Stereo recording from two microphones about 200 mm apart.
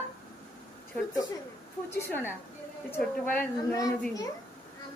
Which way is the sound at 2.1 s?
10° left (ahead or behind).